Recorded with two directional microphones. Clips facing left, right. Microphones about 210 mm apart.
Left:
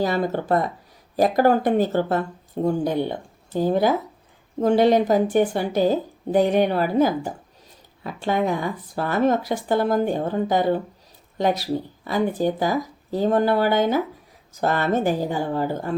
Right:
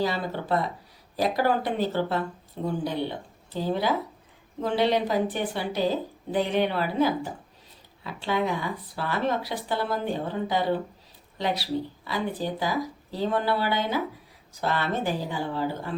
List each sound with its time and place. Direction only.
0.0 s a woman's voice: 45° left (ahead or behind)